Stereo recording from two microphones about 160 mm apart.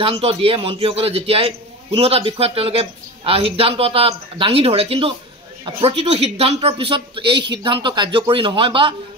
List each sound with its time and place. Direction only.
0.0 s a man's voice: 35° right (ahead or behind)